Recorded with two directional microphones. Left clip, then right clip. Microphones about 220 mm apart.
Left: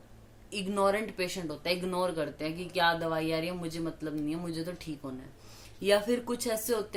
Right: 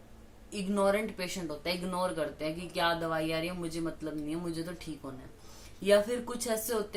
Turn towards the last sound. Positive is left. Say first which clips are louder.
# left 2 dB
turn(degrees=45)  # may be behind; listen again after turning